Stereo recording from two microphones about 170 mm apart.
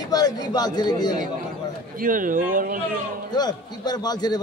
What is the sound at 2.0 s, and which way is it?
Speech, 50° right (ahead or behind).